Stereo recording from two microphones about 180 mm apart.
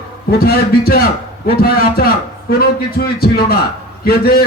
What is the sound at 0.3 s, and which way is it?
A man's voice, 60° left (ahead or behind).